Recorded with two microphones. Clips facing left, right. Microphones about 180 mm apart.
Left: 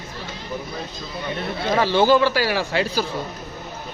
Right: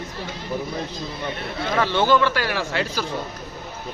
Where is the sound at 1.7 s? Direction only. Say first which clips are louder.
Left 3 dB; 35° left (ahead or behind).